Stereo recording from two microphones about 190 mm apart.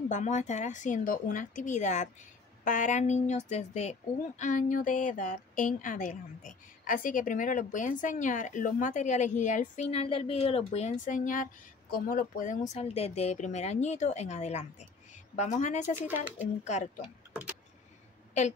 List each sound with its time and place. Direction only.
0.1 s speech: 40° left (ahead or behind)
17.3 s vehicle: 5° right (ahead or behind)